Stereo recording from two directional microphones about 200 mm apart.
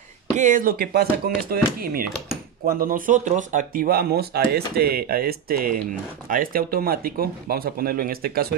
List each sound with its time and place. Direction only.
0.4 s speech: 40° right (ahead or behind)